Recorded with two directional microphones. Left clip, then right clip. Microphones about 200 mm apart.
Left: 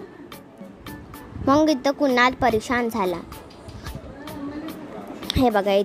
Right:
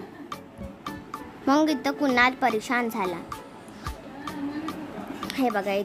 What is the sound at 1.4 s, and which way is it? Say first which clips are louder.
A woman's voice: left 4 dB; centre (ahead or behind).